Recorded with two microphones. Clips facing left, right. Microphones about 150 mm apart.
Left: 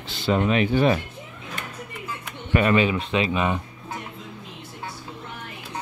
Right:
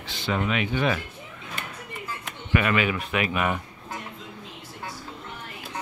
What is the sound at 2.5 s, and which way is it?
Speech, 30° left (ahead or behind).